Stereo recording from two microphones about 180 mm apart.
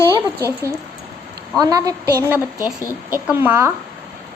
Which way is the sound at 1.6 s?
20° right (ahead or behind).